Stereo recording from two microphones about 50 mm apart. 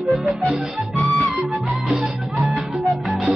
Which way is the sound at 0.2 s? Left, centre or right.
Centre.